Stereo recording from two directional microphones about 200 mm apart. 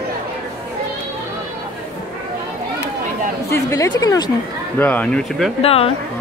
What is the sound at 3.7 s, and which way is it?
Speech, 15° left (ahead or behind).